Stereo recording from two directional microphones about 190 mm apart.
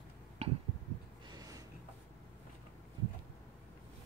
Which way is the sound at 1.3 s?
20° right (ahead or behind).